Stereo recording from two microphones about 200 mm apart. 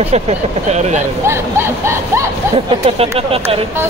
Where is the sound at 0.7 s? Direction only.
35° right (ahead or behind).